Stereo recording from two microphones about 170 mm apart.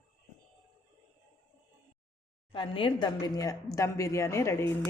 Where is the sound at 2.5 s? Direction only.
30° left (ahead or behind).